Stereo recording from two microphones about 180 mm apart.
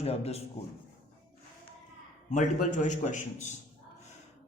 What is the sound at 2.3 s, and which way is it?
A man's voice, 45° left (ahead or behind).